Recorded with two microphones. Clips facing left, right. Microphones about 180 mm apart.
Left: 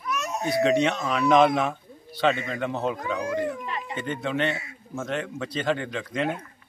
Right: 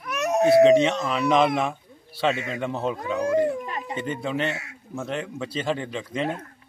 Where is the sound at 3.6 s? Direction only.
40° right (ahead or behind).